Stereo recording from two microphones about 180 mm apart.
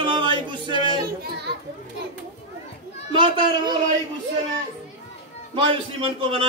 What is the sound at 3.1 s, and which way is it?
Speech, 25° right (ahead or behind).